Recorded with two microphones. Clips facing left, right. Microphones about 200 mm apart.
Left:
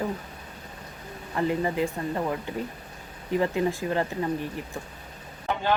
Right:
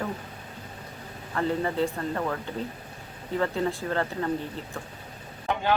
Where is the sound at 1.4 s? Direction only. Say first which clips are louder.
Left 1 dB; 15° left (ahead or behind).